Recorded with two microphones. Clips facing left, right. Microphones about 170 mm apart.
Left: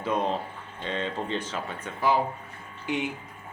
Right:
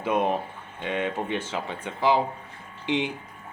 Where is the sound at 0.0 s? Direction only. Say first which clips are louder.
Right 3 dB; 15° right (ahead or behind).